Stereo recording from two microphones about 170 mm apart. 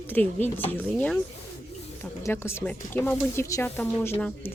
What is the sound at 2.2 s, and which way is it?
Speech, 15° left (ahead or behind).